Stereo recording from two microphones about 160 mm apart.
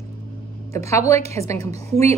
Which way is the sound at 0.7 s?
20° left (ahead or behind).